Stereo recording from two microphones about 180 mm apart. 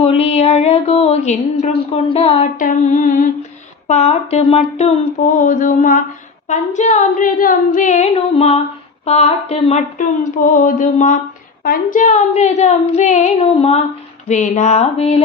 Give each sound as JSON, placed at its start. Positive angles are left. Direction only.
{"t": 0.0, "sound": "a woman's voice", "side_deg": 35}
{"t": 2.6, "sound": "a sound", "side_deg": 45}
{"t": 3.8, "sound": "a woman's voice", "side_deg": 35}